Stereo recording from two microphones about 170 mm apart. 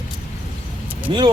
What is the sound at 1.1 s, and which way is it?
Speech, 25° right (ahead or behind).